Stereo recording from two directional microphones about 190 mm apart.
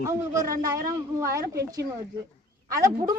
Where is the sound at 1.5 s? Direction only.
60° right (ahead or behind).